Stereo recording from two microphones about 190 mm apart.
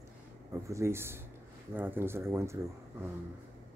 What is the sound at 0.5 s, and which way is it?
Speech, 15° right (ahead or behind).